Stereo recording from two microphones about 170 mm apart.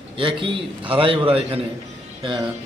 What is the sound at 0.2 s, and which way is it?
A man's voice, 30° right (ahead or behind).